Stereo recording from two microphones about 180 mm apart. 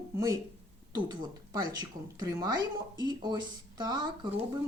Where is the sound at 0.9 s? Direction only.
25° right (ahead or behind).